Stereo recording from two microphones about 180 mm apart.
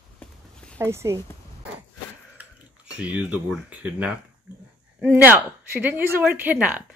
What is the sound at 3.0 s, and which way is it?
Speech, 5° right (ahead or behind).